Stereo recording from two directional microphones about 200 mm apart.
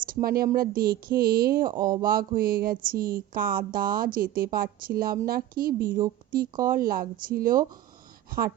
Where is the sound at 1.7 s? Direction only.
20° right (ahead or behind).